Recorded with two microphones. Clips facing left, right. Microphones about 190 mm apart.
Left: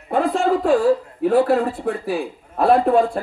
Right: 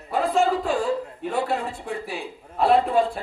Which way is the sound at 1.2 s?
65° left (ahead or behind).